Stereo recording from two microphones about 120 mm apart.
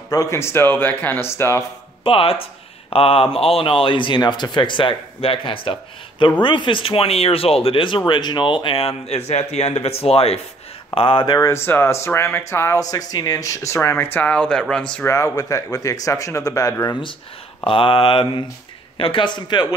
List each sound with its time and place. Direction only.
0.1 s speech: 25° left (ahead or behind)
2.0 s speech: 50° left (ahead or behind)
11.0 s speech: 45° left (ahead or behind)
11.3 s speech: 20° left (ahead or behind)
14.1 s speech: 10° left (ahead or behind)
15.0 s speech: 25° left (ahead or behind)
17.6 s a man's voice: 50° left (ahead or behind)